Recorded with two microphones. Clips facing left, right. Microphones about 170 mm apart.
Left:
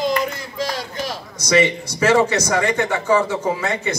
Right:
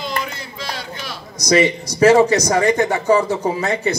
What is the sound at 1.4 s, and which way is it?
A man's voice, 40° right (ahead or behind).